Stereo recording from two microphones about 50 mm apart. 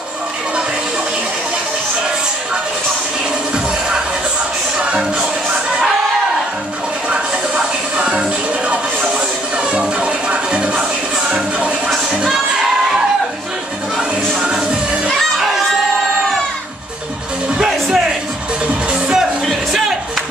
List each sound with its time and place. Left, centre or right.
4.7 s music: centre
7.1 s music: right
13.9 s music: centre
17.6 s music: centre
18.9 s music: centre
19.4 s music: centre